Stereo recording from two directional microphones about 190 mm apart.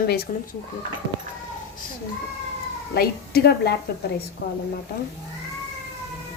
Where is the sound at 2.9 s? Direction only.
55° left (ahead or behind).